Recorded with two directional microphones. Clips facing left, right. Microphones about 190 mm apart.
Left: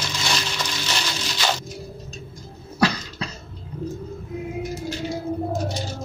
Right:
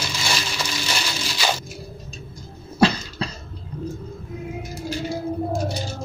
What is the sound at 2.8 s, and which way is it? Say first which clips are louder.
Cough: right 3 dB; 30° right (ahead or behind).